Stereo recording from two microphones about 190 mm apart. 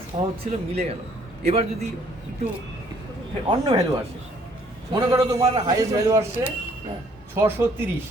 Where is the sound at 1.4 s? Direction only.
35° right (ahead or behind).